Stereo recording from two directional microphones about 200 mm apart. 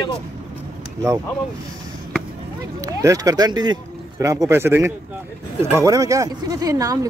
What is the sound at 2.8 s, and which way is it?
Speech, 15° right (ahead or behind).